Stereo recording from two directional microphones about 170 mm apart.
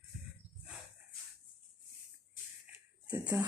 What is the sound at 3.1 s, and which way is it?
Speech, 15° right (ahead or behind).